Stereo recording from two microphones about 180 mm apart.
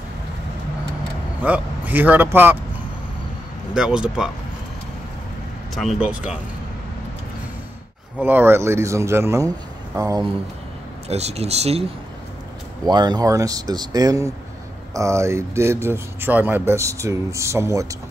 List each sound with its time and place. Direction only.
1.4 s a man's voice: 10° right (ahead or behind)
3.7 s speech: 5° right (ahead or behind)
5.8 s speech: 5° right (ahead or behind)
8.2 s speech: 10° right (ahead or behind)
11.1 s speech: 35° right (ahead or behind)
12.8 s speech: 25° right (ahead or behind)